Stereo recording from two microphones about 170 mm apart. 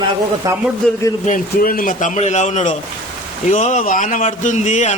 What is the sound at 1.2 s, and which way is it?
Speech, 50° left (ahead or behind).